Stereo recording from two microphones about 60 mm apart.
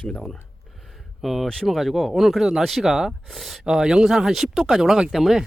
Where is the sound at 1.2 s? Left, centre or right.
Centre.